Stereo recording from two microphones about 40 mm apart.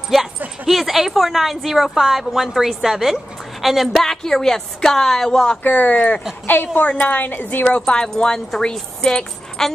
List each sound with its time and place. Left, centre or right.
0.7 s a woman's voice: centre
3.9 s speech: centre
5.6 s a woman's voice: left
5.9 s speech: left
6.4 s a woman's voice: left
6.9 s a woman's voice: left
7.8 s speech: centre